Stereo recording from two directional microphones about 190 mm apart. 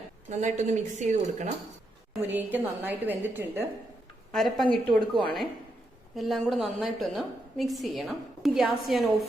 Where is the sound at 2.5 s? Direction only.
10° right (ahead or behind).